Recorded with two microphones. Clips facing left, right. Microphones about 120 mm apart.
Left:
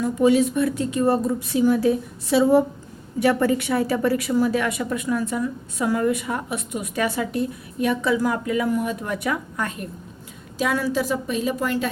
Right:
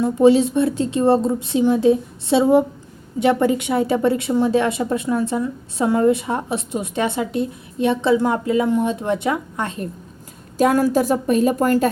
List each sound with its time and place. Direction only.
0.0 s a woman's voice: 30° right (ahead or behind)
10.6 s a woman's voice: 45° right (ahead or behind)